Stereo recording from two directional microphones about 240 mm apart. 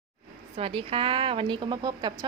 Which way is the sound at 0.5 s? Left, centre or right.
Right.